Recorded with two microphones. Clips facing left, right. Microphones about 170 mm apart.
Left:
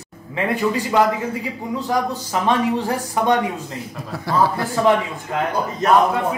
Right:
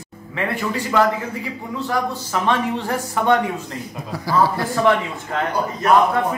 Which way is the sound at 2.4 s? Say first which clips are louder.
Left 2 dB; 10° left (ahead or behind).